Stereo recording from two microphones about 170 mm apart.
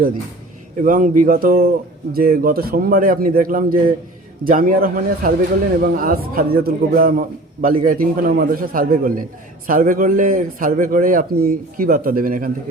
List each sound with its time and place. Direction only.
0.8 s a man's voice: 50° right (ahead or behind)